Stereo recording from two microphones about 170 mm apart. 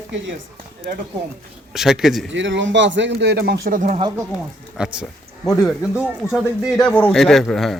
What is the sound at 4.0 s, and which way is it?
Speech, 20° right (ahead or behind).